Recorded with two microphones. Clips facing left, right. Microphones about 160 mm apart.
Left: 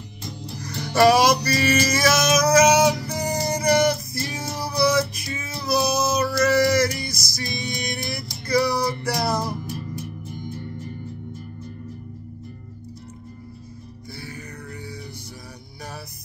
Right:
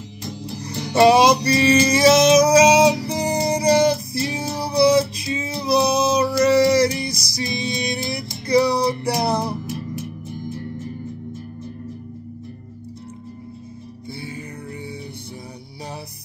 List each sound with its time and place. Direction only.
0.7 s music: 20° right (ahead or behind)